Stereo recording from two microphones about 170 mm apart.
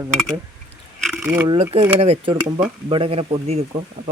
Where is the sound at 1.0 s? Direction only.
5° right (ahead or behind).